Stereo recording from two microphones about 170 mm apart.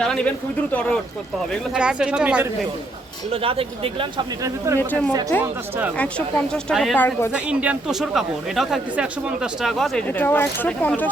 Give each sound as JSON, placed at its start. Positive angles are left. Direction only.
{"t": 0.0, "sound": "speech", "side_deg": 5}
{"t": 1.7, "sound": "speech", "side_deg": -5}
{"t": 3.3, "sound": "speech", "side_deg": -35}
{"t": 4.4, "sound": "speech", "side_deg": -15}
{"t": 4.8, "sound": "speech", "side_deg": 10}
{"t": 6.9, "sound": "speech", "side_deg": 10}
{"t": 7.3, "sound": "speech", "side_deg": -5}